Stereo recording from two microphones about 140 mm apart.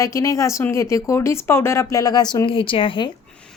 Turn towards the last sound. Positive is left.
turn(degrees=35)  # may be behind; listen again after turning